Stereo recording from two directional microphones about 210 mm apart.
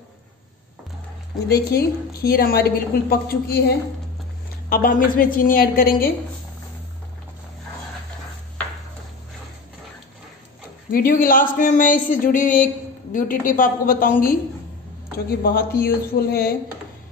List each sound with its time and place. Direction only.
1.5 s a woman's voice: 50° left (ahead or behind)
10.9 s a woman's voice: 40° left (ahead or behind)